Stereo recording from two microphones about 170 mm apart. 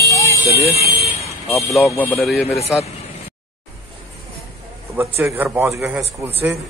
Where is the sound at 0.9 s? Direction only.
40° left (ahead or behind).